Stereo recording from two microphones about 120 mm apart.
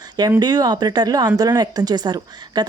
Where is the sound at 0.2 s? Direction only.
35° right (ahead or behind).